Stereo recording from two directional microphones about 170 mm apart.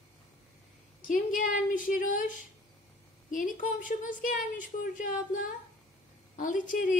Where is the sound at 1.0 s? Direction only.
55° left (ahead or behind).